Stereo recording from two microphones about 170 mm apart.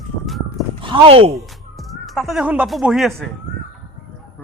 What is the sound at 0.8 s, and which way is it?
Speech, 30° right (ahead or behind).